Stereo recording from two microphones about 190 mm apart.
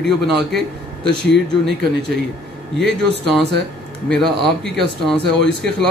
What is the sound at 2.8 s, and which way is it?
Speech, centre (ahead or behind).